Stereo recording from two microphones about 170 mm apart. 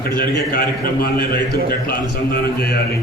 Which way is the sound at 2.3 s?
65° left (ahead or behind).